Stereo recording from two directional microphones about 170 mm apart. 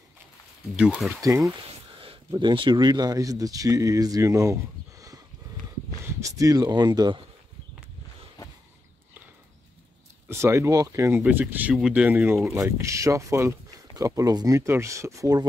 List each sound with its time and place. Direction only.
0.7 s speech: 5° right (ahead or behind)
1.5 s speech: 30° right (ahead or behind)
6.2 s speech: 20° right (ahead or behind)
10.2 s speech: 15° right (ahead or behind)